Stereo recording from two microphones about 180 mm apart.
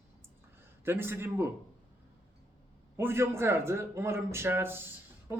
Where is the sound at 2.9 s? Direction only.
15° right (ahead or behind).